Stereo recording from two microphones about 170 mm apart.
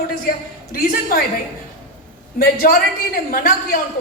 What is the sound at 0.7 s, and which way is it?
Speech, 60° left (ahead or behind).